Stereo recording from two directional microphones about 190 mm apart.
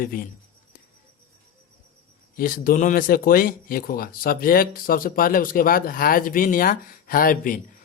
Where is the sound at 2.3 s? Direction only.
50° left (ahead or behind).